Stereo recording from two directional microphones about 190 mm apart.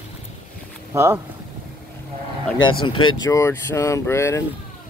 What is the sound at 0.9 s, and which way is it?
Speech, 15° right (ahead or behind).